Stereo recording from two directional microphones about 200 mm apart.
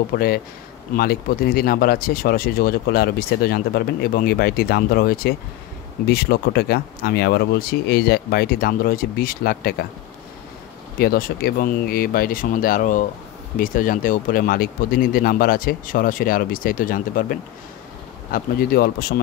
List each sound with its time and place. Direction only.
0.1 s speech: 50° left (ahead or behind)
11.0 s speech: 50° left (ahead or behind)